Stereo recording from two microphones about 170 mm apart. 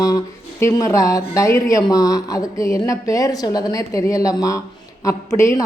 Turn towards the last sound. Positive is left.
turn(degrees=15)  # may be behind; listen again after turning